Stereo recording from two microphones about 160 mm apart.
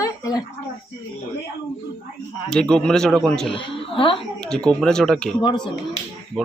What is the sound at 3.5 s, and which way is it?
Speech, 35° left (ahead or behind).